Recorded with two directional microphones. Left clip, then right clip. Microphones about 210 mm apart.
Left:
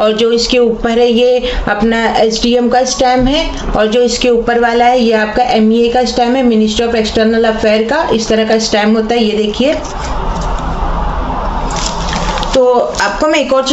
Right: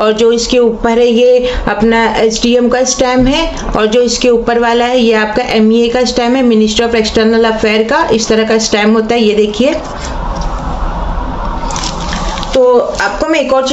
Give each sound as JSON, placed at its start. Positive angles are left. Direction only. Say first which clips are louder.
{"t": 0.0, "sound": "speech", "louder": "right 1 dB", "side_deg": -15}
{"t": 13.0, "sound": "a woman's voice", "louder": "even", "side_deg": 0}